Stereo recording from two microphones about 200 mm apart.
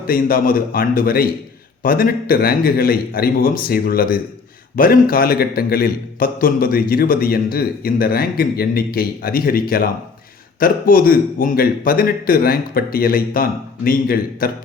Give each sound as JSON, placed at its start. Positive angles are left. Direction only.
{"t": 0.1, "sound": "a man's voice", "side_deg": 45}